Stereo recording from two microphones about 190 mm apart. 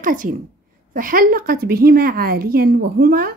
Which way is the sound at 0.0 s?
45° right (ahead or behind).